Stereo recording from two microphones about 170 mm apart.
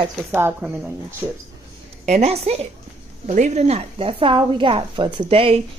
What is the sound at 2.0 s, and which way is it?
A woman's voice, 40° right (ahead or behind).